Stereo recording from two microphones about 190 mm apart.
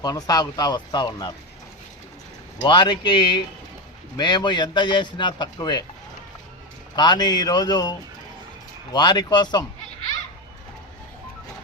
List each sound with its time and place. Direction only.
0.0 s speech: 20° left (ahead or behind)
2.6 s speech: 25° left (ahead or behind)
6.9 s speech: 20° left (ahead or behind)